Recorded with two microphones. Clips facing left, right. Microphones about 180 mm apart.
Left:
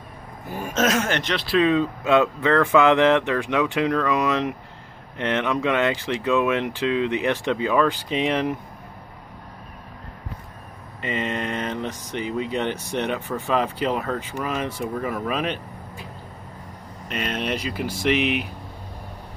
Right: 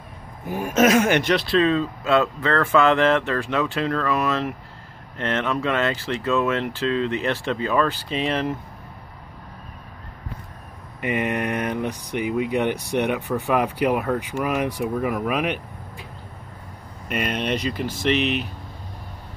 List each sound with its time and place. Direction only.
0.5 s speech: 10° right (ahead or behind)
1.6 s speech: 15° left (ahead or behind)
11.0 s speech: 15° right (ahead or behind)
17.1 s speech: 5° right (ahead or behind); by 18.5 s 10° left (ahead or behind)